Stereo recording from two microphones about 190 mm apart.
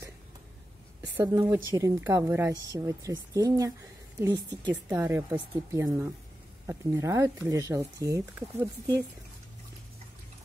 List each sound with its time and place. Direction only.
1.0 s a woman's voice: 20° right (ahead or behind)